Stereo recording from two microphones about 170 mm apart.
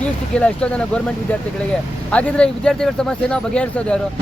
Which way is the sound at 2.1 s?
5° left (ahead or behind).